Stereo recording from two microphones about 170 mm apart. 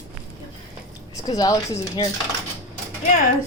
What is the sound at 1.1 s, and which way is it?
Speech, 20° left (ahead or behind).